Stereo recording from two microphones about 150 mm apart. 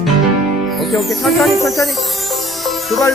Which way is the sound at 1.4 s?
20° left (ahead or behind).